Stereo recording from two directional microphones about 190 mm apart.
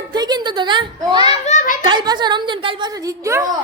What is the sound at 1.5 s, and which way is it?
Children playing, 45° left (ahead or behind).